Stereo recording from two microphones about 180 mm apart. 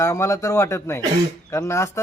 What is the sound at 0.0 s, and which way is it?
A man's voice, 15° left (ahead or behind).